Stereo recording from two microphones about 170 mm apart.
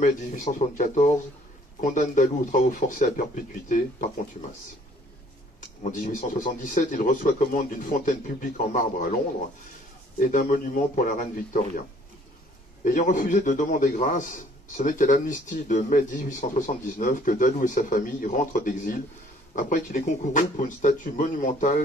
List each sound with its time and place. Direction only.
0.0 s a man's voice: 45° left (ahead or behind)
5.9 s a man's voice: 50° left (ahead or behind)
10.1 s a man's voice: 50° left (ahead or behind)
12.8 s a man's voice: 50° left (ahead or behind)